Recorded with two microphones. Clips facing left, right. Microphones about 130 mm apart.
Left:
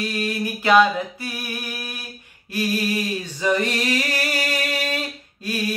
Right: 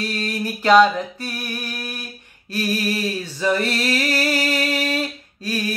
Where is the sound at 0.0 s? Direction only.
10° left (ahead or behind).